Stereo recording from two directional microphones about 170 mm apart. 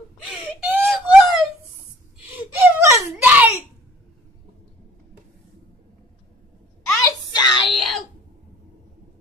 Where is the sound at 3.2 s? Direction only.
10° right (ahead or behind).